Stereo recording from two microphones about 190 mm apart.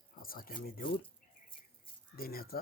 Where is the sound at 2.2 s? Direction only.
50° left (ahead or behind).